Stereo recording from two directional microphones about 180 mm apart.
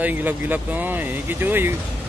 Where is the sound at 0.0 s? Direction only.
10° right (ahead or behind).